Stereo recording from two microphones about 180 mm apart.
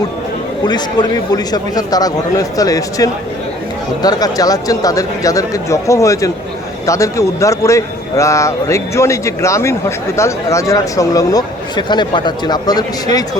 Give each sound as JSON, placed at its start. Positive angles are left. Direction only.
{"t": 0.6, "sound": "speech", "side_deg": 25}